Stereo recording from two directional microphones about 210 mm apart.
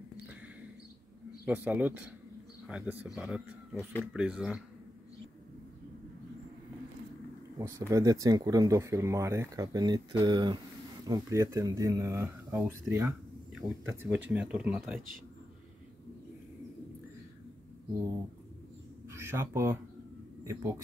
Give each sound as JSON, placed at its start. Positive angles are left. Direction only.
{"t": 1.4, "sound": "speech", "side_deg": -10}
{"t": 7.5, "sound": "speech", "side_deg": -15}
{"t": 19.0, "sound": "speech", "side_deg": -10}